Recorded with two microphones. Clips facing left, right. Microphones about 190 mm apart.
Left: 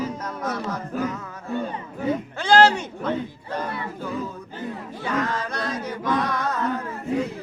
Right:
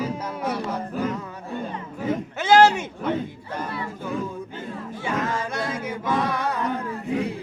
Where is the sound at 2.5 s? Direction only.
10° right (ahead or behind).